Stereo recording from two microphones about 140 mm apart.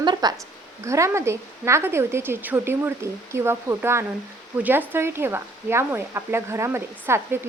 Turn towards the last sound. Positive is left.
turn(degrees=-15)  # may be behind; listen again after turning